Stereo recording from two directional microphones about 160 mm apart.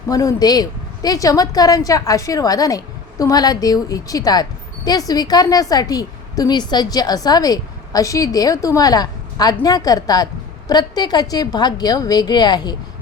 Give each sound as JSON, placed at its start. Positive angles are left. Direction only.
{"t": 0.1, "sound": "a woman's voice", "side_deg": 20}